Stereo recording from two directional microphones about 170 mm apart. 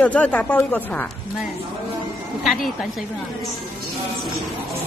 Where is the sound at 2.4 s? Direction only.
Centre (ahead or behind).